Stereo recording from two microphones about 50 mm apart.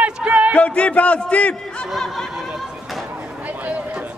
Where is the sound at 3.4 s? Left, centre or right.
Right.